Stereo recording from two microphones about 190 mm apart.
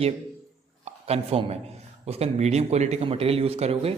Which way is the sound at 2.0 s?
35° right (ahead or behind).